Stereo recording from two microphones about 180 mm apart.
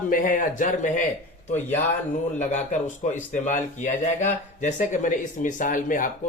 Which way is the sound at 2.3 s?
40° left (ahead or behind).